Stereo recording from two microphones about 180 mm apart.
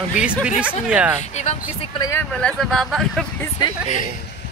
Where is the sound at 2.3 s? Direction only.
5° left (ahead or behind).